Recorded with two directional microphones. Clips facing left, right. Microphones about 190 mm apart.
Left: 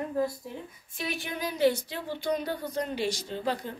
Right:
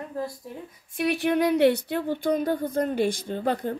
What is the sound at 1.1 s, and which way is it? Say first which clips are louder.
Speech: right 12 dB; 65° right (ahead or behind).